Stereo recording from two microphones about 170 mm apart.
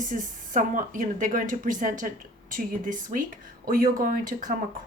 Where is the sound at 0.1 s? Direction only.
50° right (ahead or behind).